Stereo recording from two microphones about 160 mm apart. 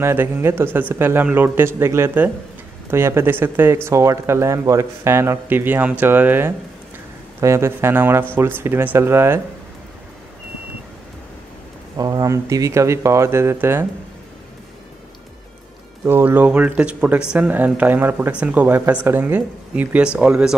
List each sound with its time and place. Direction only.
0.0 s speech: 15° right (ahead or behind)
12.0 s speech: 25° right (ahead or behind)
16.1 s speech: 10° right (ahead or behind)